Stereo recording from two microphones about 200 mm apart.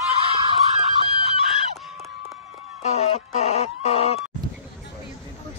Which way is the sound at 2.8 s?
30° left (ahead or behind).